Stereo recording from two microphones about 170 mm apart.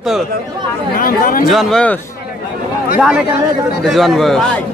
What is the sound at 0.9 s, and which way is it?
Speech, 55° left (ahead or behind).